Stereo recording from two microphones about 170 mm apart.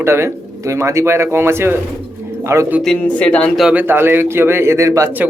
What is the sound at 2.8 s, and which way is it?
Speech, 5° left (ahead or behind).